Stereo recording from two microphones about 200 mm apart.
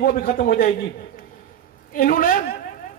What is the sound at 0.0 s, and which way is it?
Speech, 45° left (ahead or behind).